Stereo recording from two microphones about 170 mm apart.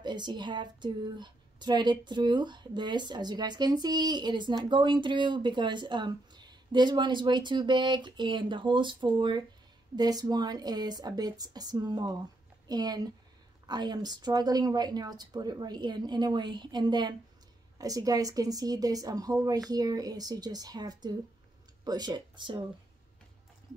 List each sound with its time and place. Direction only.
0.0 s speech: 25° right (ahead or behind)